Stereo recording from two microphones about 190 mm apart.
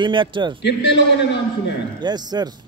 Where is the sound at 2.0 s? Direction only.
20° right (ahead or behind).